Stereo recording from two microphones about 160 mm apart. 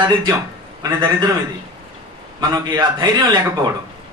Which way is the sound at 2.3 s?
25° right (ahead or behind).